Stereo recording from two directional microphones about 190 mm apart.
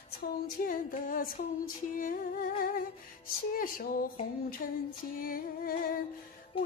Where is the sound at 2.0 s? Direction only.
45° left (ahead or behind).